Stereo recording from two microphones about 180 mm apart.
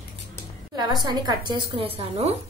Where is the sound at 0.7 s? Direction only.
25° right (ahead or behind).